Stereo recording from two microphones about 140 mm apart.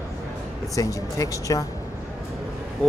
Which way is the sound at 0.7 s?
25° left (ahead or behind).